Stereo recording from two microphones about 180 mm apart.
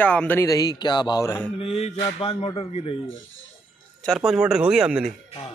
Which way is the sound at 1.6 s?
35° left (ahead or behind).